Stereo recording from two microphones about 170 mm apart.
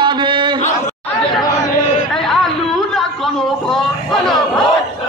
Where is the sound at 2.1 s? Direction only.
Centre (ahead or behind).